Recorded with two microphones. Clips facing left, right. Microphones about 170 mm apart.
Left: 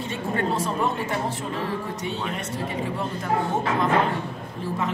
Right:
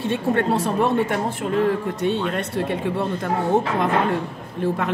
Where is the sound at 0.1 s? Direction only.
65° right (ahead or behind).